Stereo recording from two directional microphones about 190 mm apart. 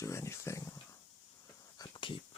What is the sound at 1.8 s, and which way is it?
Whispering, 25° left (ahead or behind).